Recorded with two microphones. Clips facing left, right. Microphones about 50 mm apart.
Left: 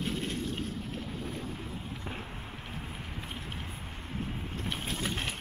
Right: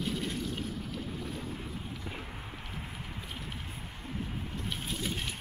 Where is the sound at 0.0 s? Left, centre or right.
Left.